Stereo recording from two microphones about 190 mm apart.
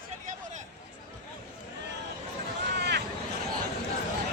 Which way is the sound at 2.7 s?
60° right (ahead or behind).